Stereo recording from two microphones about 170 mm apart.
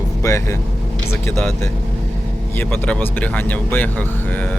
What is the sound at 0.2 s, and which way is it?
Speech, 15° left (ahead or behind).